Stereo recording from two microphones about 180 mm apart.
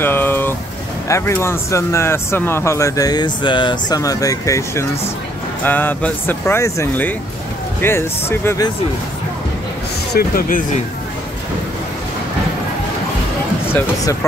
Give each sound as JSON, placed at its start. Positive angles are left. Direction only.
{"t": 0.0, "sound": "vehicle", "side_deg": 10}
{"t": 1.0, "sound": "speech", "side_deg": 15}
{"t": 10.1, "sound": "speech", "side_deg": 50}